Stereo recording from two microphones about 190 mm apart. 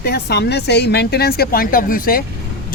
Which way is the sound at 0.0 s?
60° left (ahead or behind).